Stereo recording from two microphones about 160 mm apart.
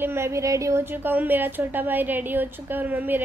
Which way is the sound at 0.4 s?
20° right (ahead or behind).